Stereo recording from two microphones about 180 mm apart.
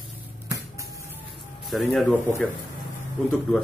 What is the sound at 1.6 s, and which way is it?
Speech, centre (ahead or behind).